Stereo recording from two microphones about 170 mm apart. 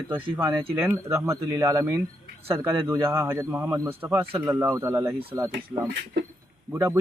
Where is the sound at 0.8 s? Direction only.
15° right (ahead or behind).